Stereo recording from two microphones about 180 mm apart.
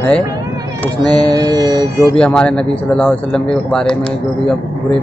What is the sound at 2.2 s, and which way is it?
Speech, 5° left (ahead or behind).